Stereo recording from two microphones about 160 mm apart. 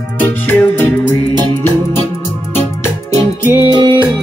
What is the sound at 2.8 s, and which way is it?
Music, 20° left (ahead or behind).